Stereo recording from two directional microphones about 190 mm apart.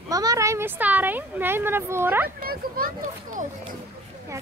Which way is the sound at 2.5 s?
50° right (ahead or behind).